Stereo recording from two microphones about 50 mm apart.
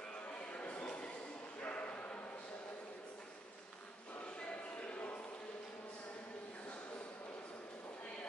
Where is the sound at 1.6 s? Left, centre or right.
Left.